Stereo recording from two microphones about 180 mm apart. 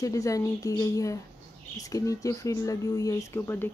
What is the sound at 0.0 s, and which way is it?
Speech, 20° left (ahead or behind).